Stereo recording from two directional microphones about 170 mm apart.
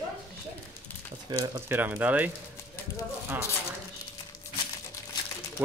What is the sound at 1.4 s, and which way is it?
Speech, 20° right (ahead or behind).